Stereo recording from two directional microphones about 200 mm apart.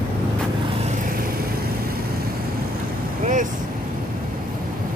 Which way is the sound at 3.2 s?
40° right (ahead or behind).